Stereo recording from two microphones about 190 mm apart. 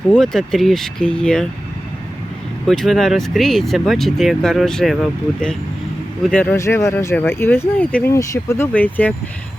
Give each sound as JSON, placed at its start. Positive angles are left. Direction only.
{"t": 0.1, "sound": "speech", "side_deg": 0}
{"t": 2.6, "sound": "speech", "side_deg": 0}
{"t": 6.2, "sound": "speech", "side_deg": 5}